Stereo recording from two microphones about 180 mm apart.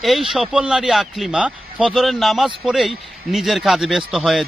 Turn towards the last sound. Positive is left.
turn(degrees=0)  # may be behind; listen again after turning